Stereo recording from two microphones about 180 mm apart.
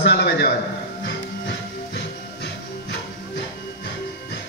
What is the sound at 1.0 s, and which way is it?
Music, 75° left (ahead or behind).